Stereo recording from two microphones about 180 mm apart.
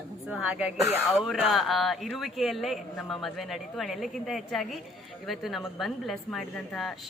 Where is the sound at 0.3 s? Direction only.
5° right (ahead or behind).